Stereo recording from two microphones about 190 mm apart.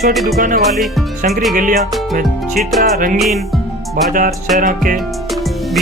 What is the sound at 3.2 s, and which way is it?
Music, centre (ahead or behind).